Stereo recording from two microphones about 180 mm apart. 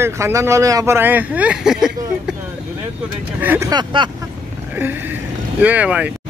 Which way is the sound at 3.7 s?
25° right (ahead or behind).